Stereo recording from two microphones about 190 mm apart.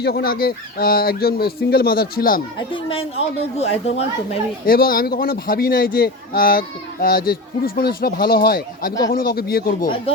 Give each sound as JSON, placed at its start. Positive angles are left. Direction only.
{"t": 0.0, "sound": "speech", "side_deg": 55}
{"t": 2.6, "sound": "a woman's voice", "side_deg": 25}
{"t": 4.6, "sound": "speech", "side_deg": 50}